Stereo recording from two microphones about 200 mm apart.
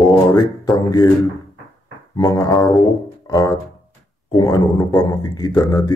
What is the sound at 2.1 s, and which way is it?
Speech, 15° left (ahead or behind).